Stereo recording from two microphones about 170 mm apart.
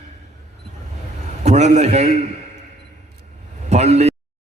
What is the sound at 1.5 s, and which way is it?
Speech, 40° right (ahead or behind).